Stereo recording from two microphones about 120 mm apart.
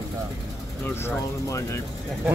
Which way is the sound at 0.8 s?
20° left (ahead or behind).